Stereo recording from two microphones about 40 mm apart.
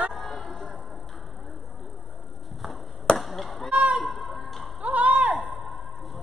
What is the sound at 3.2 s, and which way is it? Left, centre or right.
Honk, centre.